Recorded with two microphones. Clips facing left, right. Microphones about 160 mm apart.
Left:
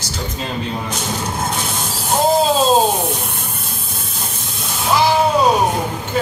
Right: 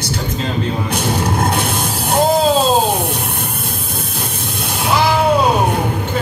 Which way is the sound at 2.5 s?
60° right (ahead or behind).